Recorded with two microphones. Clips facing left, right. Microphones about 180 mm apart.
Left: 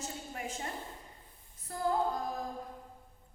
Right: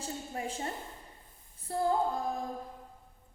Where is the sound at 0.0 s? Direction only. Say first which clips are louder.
Right 3 dB; 30° right (ahead or behind).